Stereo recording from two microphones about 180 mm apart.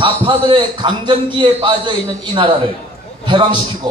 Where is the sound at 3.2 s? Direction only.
25° right (ahead or behind).